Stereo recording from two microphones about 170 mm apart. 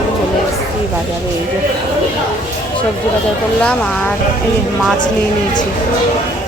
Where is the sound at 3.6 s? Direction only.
10° left (ahead or behind).